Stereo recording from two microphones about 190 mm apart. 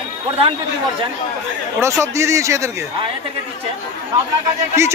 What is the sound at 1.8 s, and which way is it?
Speech, 15° right (ahead or behind).